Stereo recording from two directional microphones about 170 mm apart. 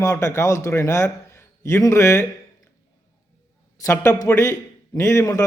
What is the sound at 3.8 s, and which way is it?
A man's voice, 15° left (ahead or behind).